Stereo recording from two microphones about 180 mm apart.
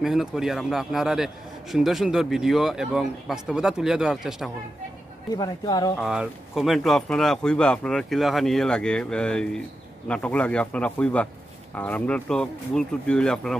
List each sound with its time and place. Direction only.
0.0 s a man's voice: 5° right (ahead or behind)
5.3 s speech: 20° left (ahead or behind)
5.9 s a man's voice: centre (ahead or behind)